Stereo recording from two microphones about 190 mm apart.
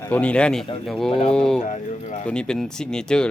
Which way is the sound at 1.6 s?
40° left (ahead or behind).